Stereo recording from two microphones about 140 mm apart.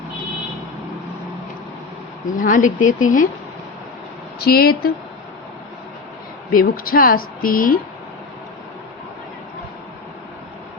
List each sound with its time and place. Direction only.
2.2 s speech: 65° left (ahead or behind)
4.4 s a woman's voice: 90° left
6.5 s a woman's voice: 90° left